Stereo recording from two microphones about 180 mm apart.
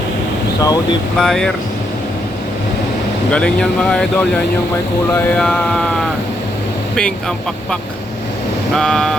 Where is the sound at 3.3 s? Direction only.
5° left (ahead or behind).